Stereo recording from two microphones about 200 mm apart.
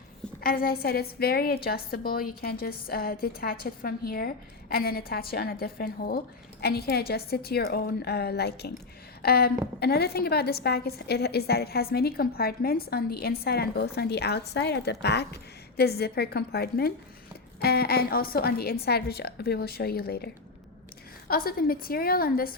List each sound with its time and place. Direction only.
0.4 s a woman's voice: 45° left (ahead or behind)